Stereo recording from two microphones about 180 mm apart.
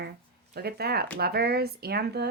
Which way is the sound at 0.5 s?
60° right (ahead or behind).